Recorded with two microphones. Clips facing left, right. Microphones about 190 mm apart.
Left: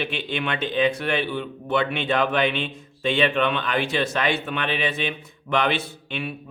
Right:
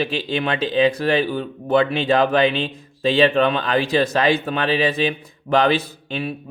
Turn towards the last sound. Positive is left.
turn(degrees=-35)  # may be behind; listen again after turning